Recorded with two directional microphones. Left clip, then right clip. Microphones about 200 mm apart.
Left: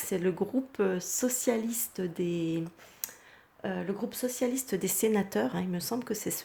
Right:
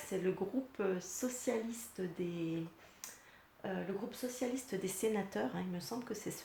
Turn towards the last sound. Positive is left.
turn(degrees=50)  # may be behind; listen again after turning